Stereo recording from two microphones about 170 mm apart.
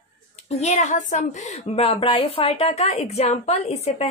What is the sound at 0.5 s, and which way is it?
A woman's voice, 40° left (ahead or behind).